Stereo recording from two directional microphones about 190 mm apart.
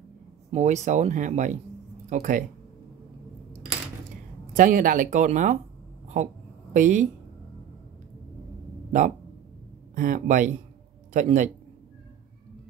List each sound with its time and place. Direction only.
0.5 s speech: 35° right (ahead or behind)
4.6 s a woman's voice: 45° right (ahead or behind)
9.9 s speech: 45° right (ahead or behind)